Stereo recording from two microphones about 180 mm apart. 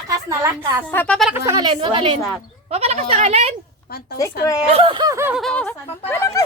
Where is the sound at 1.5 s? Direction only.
25° right (ahead or behind).